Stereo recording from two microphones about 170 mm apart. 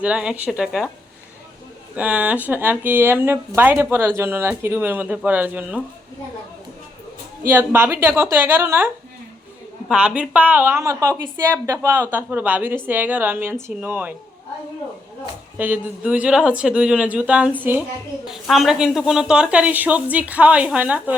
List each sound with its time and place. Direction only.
0.0 s speech: 5° right (ahead or behind)
2.0 s speech: 10° right (ahead or behind)
7.4 s speech: 10° right (ahead or behind)
9.9 s speech: 5° right (ahead or behind)
15.5 s speech: 10° right (ahead or behind)